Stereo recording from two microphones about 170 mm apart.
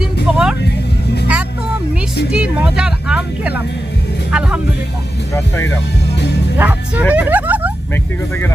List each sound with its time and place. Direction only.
0.0 s music: 5° right (ahead or behind)
2.3 s speech: 5° right (ahead or behind)
5.3 s speech: 20° left (ahead or behind)
6.6 s speech: 10° right (ahead or behind)
7.1 s a sound: 10° right (ahead or behind)